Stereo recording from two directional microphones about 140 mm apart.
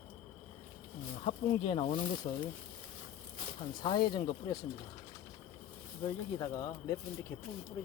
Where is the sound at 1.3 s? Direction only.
40° left (ahead or behind).